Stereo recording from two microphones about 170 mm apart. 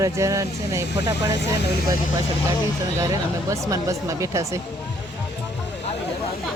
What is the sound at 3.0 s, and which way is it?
Speech, 20° right (ahead or behind).